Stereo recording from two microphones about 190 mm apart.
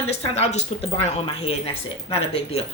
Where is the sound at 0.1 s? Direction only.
30° left (ahead or behind).